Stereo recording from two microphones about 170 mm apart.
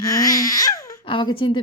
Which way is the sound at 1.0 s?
30° left (ahead or behind).